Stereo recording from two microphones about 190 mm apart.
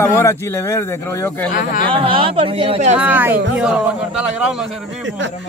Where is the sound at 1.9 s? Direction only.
25° right (ahead or behind).